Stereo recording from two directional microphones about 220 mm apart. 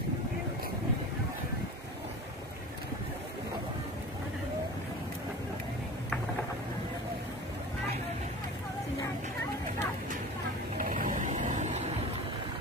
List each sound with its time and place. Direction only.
10.8 s vehicle: 40° right (ahead or behind)